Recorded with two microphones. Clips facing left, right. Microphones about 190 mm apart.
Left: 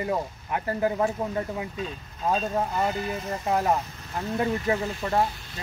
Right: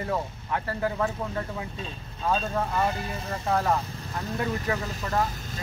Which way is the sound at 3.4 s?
15° left (ahead or behind).